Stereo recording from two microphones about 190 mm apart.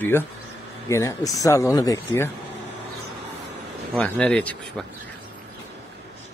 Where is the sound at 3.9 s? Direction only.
5° left (ahead or behind).